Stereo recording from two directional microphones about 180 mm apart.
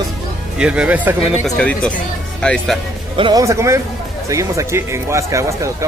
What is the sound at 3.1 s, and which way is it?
Speech, 25° right (ahead or behind).